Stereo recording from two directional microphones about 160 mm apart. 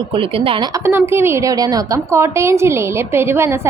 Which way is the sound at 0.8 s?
15° right (ahead or behind).